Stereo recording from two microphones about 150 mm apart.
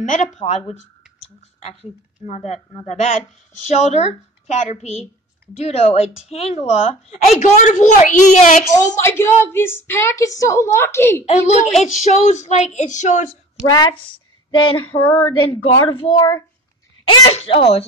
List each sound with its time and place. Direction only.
0.0 s a woman's voice: 50° left (ahead or behind)
9.0 s a woman's voice: 15° left (ahead or behind)
11.2 s a woman's voice: 45° left (ahead or behind)
14.5 s female singing: 35° left (ahead or behind)
14.9 s a woman's voice: 10° left (ahead or behind)
15.5 s speech: 35° left (ahead or behind)
17.1 s speech: 40° left (ahead or behind)